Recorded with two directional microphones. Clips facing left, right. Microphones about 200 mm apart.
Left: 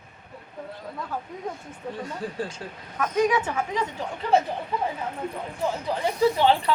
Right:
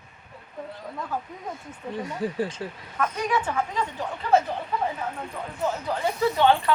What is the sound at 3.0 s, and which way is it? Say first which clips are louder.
Speech: left 3 dB; 10° left (ahead or behind).